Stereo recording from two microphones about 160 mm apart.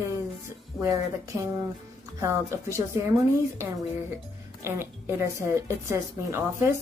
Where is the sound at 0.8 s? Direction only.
20° right (ahead or behind).